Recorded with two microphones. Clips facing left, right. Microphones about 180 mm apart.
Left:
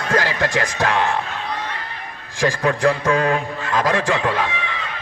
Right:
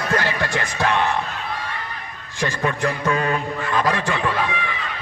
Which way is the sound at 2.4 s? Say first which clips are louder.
Left 5 dB; 90° left.